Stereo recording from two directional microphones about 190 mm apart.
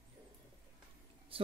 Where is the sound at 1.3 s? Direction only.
30° right (ahead or behind).